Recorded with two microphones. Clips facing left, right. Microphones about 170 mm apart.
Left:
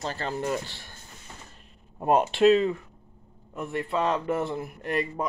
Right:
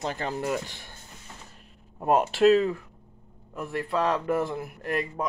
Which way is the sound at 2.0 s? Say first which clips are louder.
Even; centre (ahead or behind).